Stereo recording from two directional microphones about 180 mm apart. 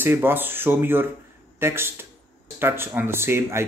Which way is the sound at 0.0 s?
10° right (ahead or behind).